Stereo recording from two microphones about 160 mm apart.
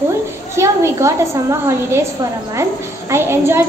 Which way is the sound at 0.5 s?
20° right (ahead or behind).